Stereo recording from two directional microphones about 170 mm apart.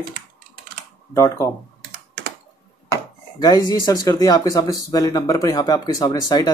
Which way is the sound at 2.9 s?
25° left (ahead or behind).